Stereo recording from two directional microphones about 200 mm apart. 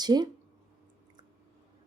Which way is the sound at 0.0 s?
20° right (ahead or behind).